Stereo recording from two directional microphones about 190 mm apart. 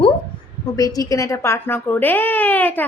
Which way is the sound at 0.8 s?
20° left (ahead or behind).